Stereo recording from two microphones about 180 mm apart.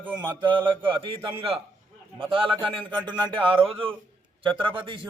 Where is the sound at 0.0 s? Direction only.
25° right (ahead or behind).